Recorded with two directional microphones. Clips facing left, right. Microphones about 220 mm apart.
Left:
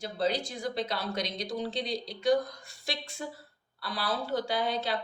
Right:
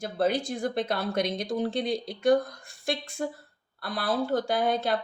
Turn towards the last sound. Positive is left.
turn(degrees=-50)  # may be behind; listen again after turning